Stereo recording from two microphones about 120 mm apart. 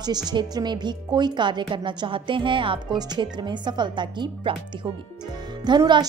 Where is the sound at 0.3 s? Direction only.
40° right (ahead or behind).